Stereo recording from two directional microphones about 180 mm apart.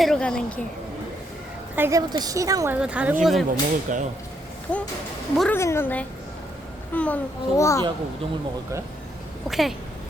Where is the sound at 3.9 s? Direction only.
45° right (ahead or behind).